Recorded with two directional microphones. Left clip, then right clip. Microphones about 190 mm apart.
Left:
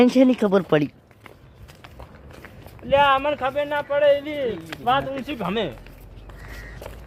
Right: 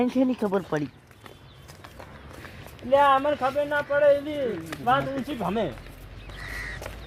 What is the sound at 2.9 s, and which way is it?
Speech, 15° left (ahead or behind).